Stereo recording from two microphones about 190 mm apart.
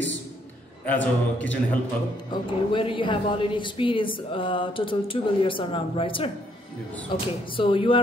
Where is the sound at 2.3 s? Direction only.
25° left (ahead or behind).